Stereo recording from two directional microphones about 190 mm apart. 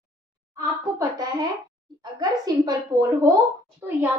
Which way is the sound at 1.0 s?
20° right (ahead or behind).